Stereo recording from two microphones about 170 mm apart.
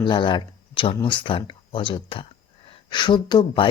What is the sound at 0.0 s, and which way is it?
Speech, 30° left (ahead or behind).